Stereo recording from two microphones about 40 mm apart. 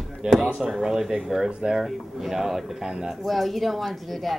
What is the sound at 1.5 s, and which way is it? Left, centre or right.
Speech, right.